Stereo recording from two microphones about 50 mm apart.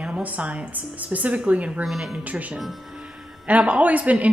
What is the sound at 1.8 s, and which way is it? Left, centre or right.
Speech, centre.